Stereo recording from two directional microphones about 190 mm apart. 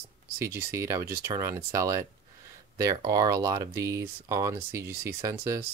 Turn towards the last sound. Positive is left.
turn(degrees=-15)  # may be behind; listen again after turning